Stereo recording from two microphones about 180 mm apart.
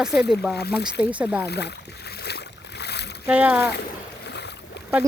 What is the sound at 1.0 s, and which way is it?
Speech, 10° right (ahead or behind).